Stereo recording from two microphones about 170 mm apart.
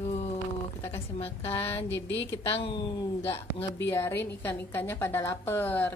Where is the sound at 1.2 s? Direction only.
35° left (ahead or behind).